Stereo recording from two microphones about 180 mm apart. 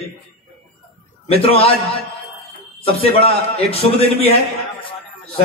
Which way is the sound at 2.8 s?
30° left (ahead or behind).